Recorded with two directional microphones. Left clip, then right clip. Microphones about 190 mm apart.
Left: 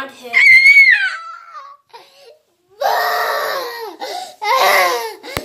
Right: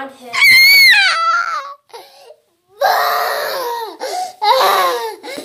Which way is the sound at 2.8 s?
25° right (ahead or behind).